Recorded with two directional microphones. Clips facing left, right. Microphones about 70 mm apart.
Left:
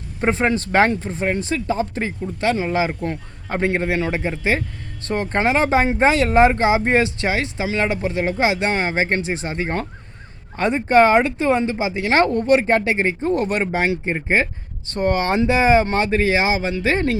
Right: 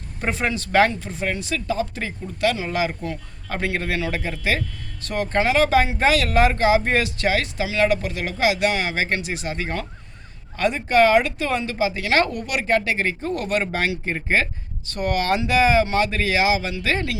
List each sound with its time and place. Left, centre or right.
0.2 s speech: left